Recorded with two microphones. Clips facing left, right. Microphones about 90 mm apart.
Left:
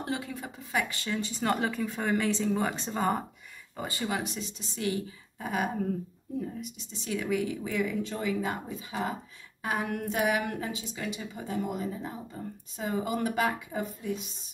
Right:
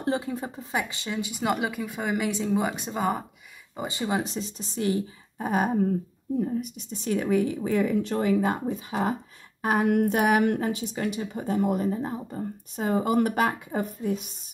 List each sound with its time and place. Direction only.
0.0 s a woman's voice: 35° right (ahead or behind)
0.7 s speech: 20° right (ahead or behind); by 3.3 s 5° right (ahead or behind)
3.7 s speech: 20° right (ahead or behind)
4.2 s a woman's voice: 35° right (ahead or behind)
6.6 s a woman's voice: 45° right (ahead or behind)
8.0 s a woman's voice: 55° right (ahead or behind)
8.6 s a woman's voice: 40° right (ahead or behind)
9.6 s a woman's voice: 50° right (ahead or behind)